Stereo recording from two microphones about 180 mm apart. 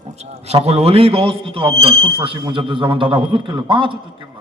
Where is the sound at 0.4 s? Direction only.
35° right (ahead or behind).